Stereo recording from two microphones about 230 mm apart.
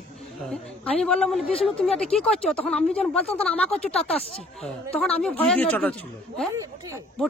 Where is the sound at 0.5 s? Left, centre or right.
Centre.